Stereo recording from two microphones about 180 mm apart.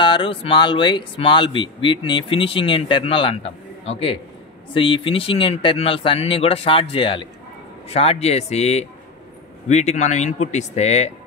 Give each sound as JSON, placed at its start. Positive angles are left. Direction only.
{"t": 0.0, "sound": "speech", "side_deg": 25}